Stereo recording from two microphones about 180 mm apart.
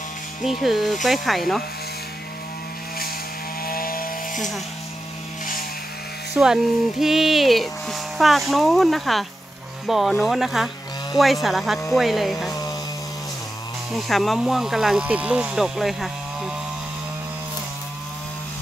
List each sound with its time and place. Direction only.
0.4 s speech: centre (ahead or behind)
3.6 s chainsaw: 55° left (ahead or behind)
6.3 s speech: 5° right (ahead or behind)
13.9 s speech: centre (ahead or behind)